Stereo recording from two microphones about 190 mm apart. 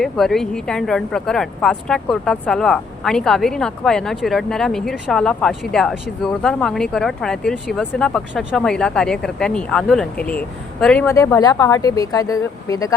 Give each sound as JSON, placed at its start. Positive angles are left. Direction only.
{"t": 0.0, "sound": "speech", "side_deg": 0}
{"t": 11.0, "sound": "speech", "side_deg": 15}